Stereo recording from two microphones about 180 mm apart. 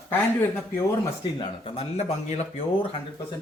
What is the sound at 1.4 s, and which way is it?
Speech, 35° left (ahead or behind).